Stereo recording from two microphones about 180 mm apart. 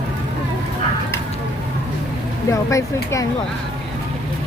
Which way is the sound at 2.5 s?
15° left (ahead or behind).